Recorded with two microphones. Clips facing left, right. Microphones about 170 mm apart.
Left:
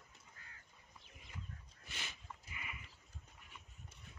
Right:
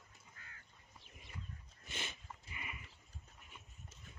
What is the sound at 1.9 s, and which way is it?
Livestock, 25° right (ahead or behind).